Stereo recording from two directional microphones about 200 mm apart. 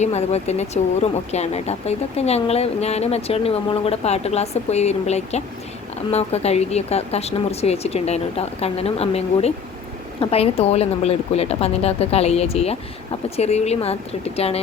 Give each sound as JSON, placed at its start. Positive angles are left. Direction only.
{"t": 0.0, "sound": "speech", "side_deg": 35}